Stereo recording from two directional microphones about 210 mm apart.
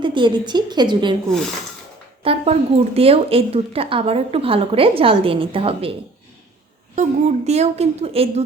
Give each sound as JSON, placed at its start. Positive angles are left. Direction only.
{"t": 0.0, "sound": "a woman's voice", "side_deg": -20}
{"t": 2.2, "sound": "a woman's voice", "side_deg": -30}
{"t": 6.9, "sound": "speech", "side_deg": -35}